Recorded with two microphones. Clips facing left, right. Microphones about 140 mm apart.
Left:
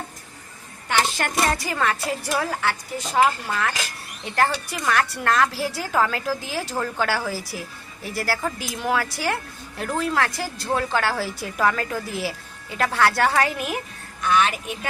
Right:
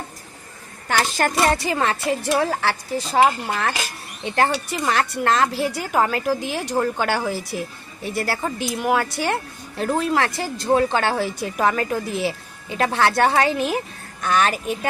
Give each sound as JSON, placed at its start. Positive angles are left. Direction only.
{"t": 0.9, "sound": "a woman's voice", "side_deg": -35}
{"t": 14.2, "sound": "a woman's voice", "side_deg": -40}